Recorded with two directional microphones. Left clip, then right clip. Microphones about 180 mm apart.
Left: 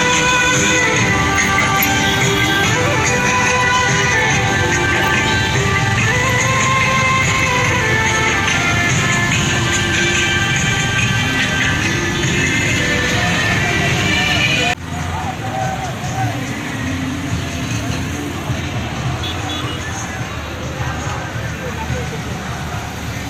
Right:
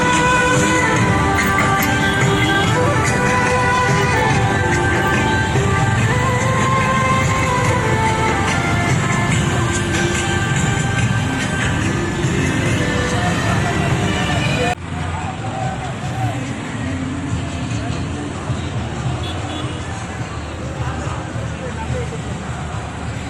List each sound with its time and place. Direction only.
0.1 s music: 30° right (ahead or behind)